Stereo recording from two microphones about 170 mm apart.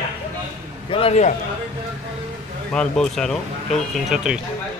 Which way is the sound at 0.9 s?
35° left (ahead or behind).